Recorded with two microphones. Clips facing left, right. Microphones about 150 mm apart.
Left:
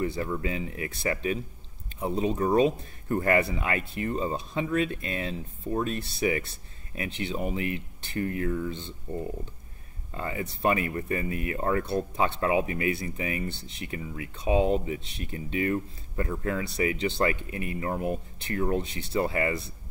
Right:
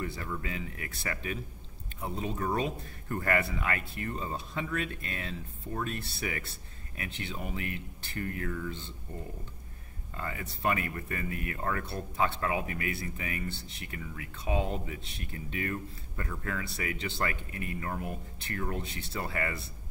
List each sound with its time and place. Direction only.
0.0 s speech: 25° left (ahead or behind)
10.1 s speech: 20° left (ahead or behind)